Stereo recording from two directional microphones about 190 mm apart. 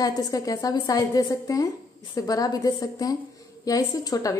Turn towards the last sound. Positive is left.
turn(degrees=20)  # may be behind; listen again after turning